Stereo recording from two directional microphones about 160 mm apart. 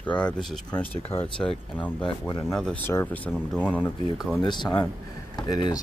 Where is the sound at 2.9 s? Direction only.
15° left (ahead or behind).